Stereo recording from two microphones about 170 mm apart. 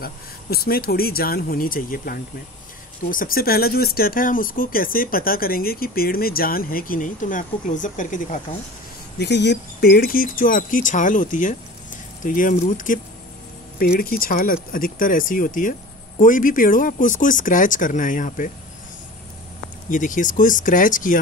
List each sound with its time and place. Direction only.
0.0 s speech: 60° left (ahead or behind); by 8.5 s 45° left (ahead or behind)
9.2 s speech: 85° left; by 18.5 s 50° left (ahead or behind)
19.9 s speech: 50° left (ahead or behind)